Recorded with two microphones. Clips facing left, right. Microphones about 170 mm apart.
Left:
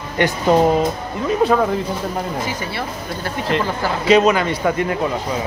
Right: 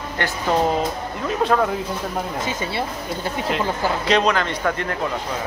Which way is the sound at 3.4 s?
Centre (ahead or behind).